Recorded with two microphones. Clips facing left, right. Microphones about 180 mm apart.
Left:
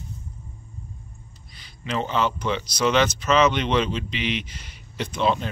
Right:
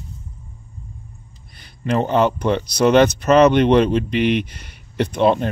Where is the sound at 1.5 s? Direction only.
55° right (ahead or behind).